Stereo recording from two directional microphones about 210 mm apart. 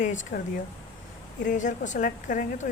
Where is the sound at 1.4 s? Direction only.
35° left (ahead or behind).